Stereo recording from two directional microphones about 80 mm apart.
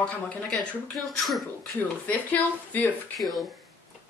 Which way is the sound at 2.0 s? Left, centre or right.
Centre.